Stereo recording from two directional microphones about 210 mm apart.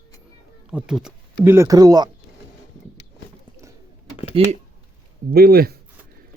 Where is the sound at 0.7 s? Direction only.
5° right (ahead or behind).